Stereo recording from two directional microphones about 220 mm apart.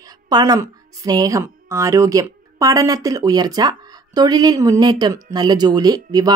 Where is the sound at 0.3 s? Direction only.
15° right (ahead or behind).